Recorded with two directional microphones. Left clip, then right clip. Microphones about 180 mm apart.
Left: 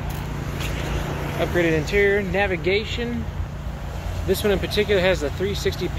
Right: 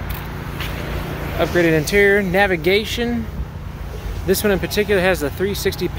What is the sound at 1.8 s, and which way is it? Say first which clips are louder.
Speech: right 5 dB; 55° right (ahead or behind).